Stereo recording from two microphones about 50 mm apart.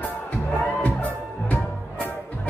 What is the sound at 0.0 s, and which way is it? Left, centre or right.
Music, left.